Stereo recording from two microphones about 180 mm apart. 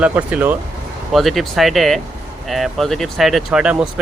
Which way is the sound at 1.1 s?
Centre (ahead or behind).